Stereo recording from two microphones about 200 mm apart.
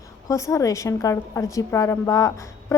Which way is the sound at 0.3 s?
15° left (ahead or behind).